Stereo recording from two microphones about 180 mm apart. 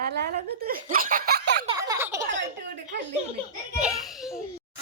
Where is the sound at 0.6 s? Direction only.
50° right (ahead or behind).